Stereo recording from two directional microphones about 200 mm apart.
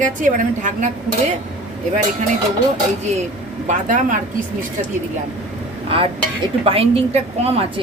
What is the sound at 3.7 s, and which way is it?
Speech, 40° right (ahead or behind).